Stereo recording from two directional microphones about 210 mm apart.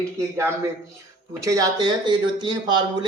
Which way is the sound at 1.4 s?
15° right (ahead or behind).